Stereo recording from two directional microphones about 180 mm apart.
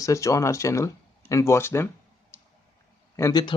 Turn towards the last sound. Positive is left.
turn(degrees=20)  # may be behind; listen again after turning